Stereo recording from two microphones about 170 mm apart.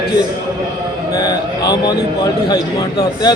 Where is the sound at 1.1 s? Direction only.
20° left (ahead or behind).